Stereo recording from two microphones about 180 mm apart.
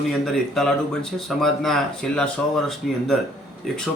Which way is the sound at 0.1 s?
Centre (ahead or behind).